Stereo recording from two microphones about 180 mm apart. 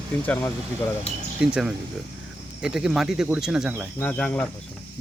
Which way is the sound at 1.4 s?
5° right (ahead or behind).